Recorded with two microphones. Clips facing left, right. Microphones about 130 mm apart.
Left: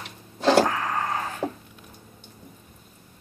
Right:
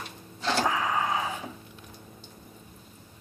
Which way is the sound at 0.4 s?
75° left (ahead or behind).